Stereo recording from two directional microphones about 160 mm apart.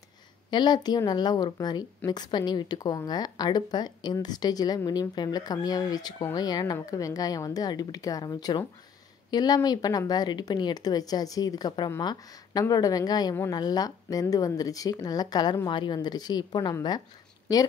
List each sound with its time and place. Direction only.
0.5 s speech: 25° left (ahead or behind)